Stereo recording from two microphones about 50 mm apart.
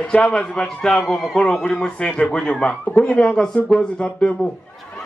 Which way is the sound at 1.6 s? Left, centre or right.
Centre.